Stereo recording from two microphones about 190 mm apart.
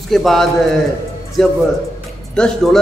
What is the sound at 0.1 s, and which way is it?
A man's voice, centre (ahead or behind).